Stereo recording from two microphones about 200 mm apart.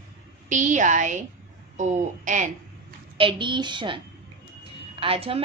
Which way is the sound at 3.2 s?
25° right (ahead or behind).